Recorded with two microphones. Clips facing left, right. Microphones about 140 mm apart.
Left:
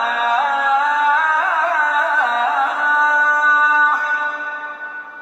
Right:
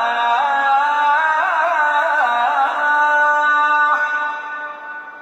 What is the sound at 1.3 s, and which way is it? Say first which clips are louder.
Carnatic music: right 1 dB; 30° right (ahead or behind).